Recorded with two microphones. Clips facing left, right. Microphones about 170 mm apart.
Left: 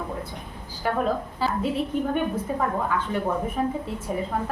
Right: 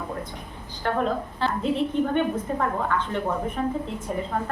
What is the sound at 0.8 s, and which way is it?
A woman's voice, 5° left (ahead or behind).